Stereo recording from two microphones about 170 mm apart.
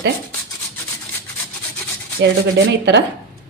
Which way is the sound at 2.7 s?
90° right.